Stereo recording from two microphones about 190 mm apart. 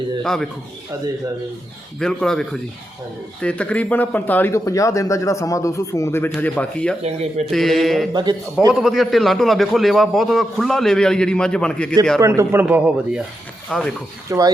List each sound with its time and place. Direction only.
0.2 s a man's voice: 5° left (ahead or behind)
2.0 s a man's voice: 5° left (ahead or behind)
7.0 s speech: 35° right (ahead or behind)
7.5 s a man's voice: centre (ahead or behind)
8.1 s a man's voice: 20° right (ahead or behind)
8.7 s a man's voice: centre (ahead or behind)
12.2 s a man's voice: 15° right (ahead or behind); by 13.9 s centre (ahead or behind)
14.3 s a man's voice: 20° right (ahead or behind)